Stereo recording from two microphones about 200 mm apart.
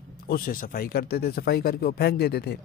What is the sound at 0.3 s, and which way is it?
Speech, 45° left (ahead or behind).